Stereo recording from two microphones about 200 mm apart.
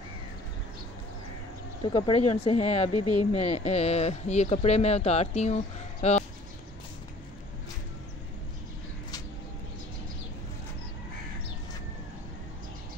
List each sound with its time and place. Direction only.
1.8 s speech: 25° left (ahead or behind)